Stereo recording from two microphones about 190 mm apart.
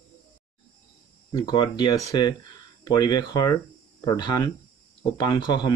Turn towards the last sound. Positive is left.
turn(degrees=20)  # may be behind; listen again after turning